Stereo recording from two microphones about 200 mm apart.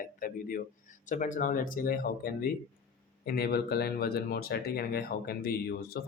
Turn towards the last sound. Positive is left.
turn(degrees=50)  # may be behind; listen again after turning